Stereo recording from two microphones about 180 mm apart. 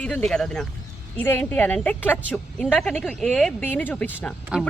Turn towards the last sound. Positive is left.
turn(degrees=-5)  # may be behind; listen again after turning